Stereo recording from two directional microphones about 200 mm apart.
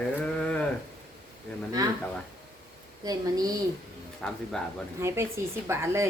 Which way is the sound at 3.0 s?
20° right (ahead or behind).